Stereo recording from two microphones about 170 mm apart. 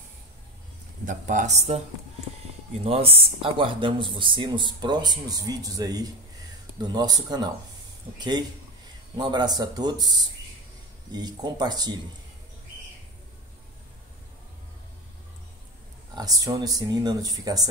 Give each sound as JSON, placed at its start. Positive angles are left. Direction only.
{"t": 1.0, "sound": "speech", "side_deg": -50}
{"t": 16.2, "sound": "speech", "side_deg": -20}